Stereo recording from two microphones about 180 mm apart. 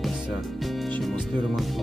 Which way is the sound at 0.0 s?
Centre (ahead or behind).